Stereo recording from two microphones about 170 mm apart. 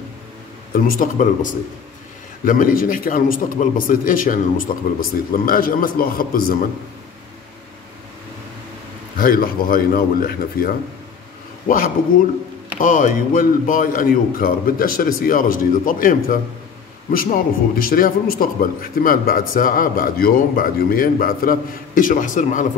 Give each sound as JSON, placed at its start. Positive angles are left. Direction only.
{"t": 0.7, "sound": "a man's voice", "side_deg": 55}
{"t": 9.2, "sound": "a man's voice", "side_deg": 60}